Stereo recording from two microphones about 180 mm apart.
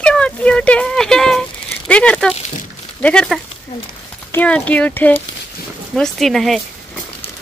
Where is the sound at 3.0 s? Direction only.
5° left (ahead or behind).